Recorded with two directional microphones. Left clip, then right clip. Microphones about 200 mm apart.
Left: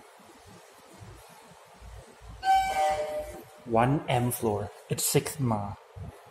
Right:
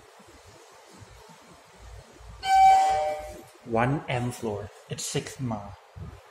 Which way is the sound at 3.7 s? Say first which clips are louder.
Left 1 dB; 5° left (ahead or behind).